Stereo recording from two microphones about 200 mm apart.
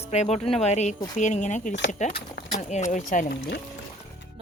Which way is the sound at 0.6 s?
35° left (ahead or behind).